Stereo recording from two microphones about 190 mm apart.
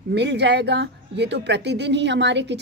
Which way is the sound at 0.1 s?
65° right (ahead or behind).